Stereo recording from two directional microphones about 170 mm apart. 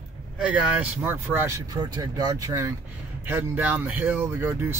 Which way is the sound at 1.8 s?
25° right (ahead or behind).